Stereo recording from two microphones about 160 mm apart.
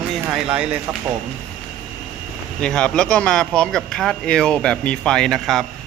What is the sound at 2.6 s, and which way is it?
Speech, 5° left (ahead or behind).